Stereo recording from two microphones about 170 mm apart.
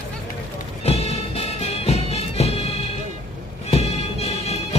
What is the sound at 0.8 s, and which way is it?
Music, 35° left (ahead or behind).